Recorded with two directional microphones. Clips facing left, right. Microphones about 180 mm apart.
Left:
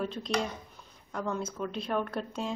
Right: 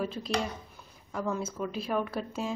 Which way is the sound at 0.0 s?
5° right (ahead or behind).